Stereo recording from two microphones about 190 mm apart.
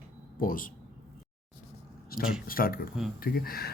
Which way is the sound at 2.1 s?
50° left (ahead or behind).